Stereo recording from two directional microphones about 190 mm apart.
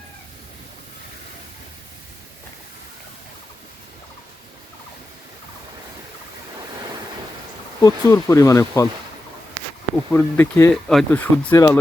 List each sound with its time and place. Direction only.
7.8 s speech: 15° left (ahead or behind)
10.1 s speech: 10° left (ahead or behind)